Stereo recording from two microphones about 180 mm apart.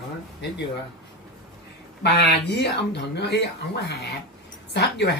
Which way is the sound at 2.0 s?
70° left (ahead or behind).